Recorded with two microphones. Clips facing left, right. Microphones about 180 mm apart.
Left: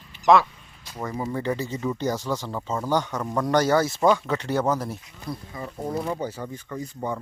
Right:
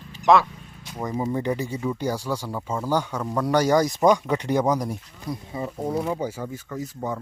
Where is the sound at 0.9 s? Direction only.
20° right (ahead or behind).